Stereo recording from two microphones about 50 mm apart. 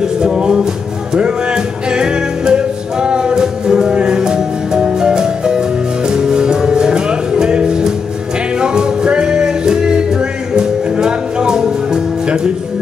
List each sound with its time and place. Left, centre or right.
0.0 s music: centre